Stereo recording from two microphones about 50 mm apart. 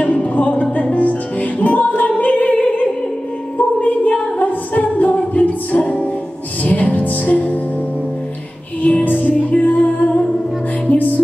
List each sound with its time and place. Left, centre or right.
0.0 s music: left
8.8 s music: left